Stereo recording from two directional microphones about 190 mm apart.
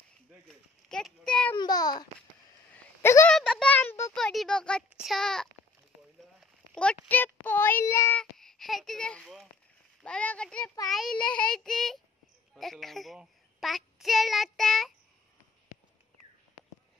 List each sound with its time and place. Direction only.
0.5 s speech: centre (ahead or behind)
1.6 s a child's voice: 20° left (ahead or behind)
2.7 s a sound: 10° left (ahead or behind)
4.1 s a child's voice: centre (ahead or behind)